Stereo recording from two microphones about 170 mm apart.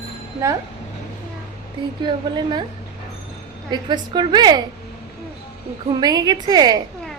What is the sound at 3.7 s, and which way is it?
Speech, 25° right (ahead or behind).